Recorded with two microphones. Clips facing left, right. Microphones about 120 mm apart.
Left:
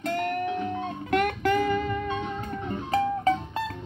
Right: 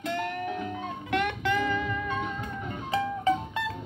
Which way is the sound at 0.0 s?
45° left (ahead or behind).